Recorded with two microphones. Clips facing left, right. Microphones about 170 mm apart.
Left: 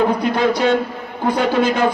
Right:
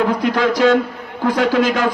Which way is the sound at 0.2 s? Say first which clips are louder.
Right 1 dB; 90° right.